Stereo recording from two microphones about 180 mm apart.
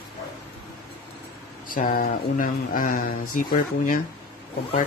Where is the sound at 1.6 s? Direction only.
50° left (ahead or behind).